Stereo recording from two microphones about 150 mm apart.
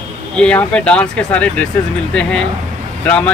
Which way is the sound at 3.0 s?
10° left (ahead or behind).